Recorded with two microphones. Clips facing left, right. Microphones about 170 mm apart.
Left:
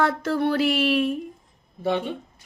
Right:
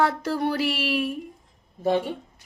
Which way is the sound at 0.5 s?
55° left (ahead or behind).